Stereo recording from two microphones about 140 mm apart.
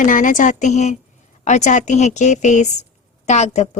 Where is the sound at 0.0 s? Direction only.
70° left (ahead or behind).